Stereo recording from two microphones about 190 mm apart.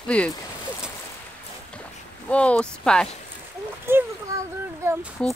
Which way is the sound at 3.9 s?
15° right (ahead or behind).